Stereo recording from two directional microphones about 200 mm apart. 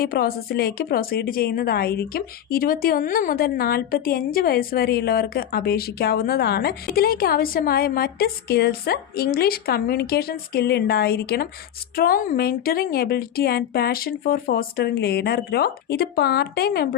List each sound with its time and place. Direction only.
0.0 s a woman's voice: 50° left (ahead or behind)